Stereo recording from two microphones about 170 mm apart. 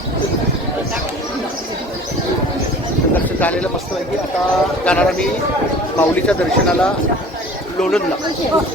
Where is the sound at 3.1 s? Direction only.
10° left (ahead or behind).